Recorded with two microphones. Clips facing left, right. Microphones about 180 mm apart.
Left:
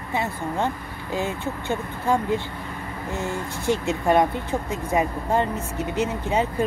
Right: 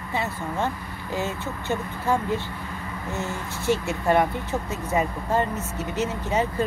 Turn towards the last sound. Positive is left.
turn(degrees=15)  # may be behind; listen again after turning